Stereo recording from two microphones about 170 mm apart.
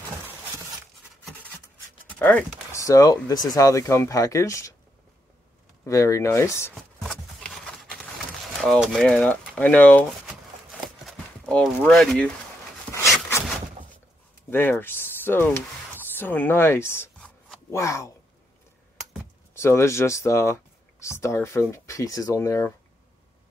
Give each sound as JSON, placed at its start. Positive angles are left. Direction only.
{"t": 2.0, "sound": "a sound", "side_deg": 5}
{"t": 2.7, "sound": "speech", "side_deg": 20}
{"t": 5.9, "sound": "speech", "side_deg": 20}
{"t": 6.7, "sound": "a sound", "side_deg": 5}
{"t": 14.5, "sound": "speech", "side_deg": 15}
{"t": 19.5, "sound": "speech", "side_deg": 15}